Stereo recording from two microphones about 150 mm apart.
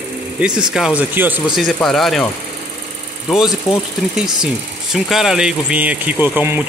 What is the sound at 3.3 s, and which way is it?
Speech, 5° right (ahead or behind).